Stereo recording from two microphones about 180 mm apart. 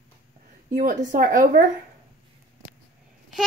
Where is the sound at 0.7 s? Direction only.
50° right (ahead or behind).